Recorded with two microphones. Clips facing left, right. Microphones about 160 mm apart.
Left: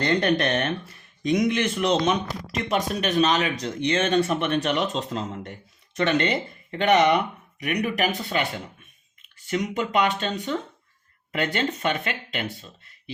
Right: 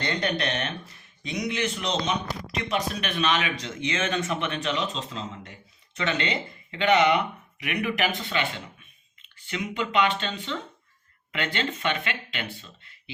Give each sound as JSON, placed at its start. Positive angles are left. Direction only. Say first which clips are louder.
{"t": 0.0, "sound": "speech", "louder": "left 6 dB", "side_deg": 50}
{"t": 4.5, "sound": "speech", "louder": "left 5 dB", "side_deg": 50}